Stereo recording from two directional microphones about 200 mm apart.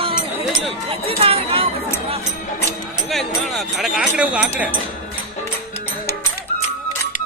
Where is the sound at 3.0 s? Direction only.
Centre (ahead or behind).